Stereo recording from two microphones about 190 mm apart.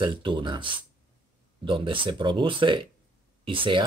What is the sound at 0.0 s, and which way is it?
Speech, 25° right (ahead or behind).